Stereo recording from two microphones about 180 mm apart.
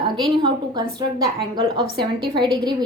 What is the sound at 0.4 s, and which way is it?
A woman's voice, 25° right (ahead or behind).